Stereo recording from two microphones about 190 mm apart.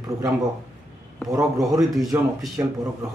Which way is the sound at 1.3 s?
20° right (ahead or behind).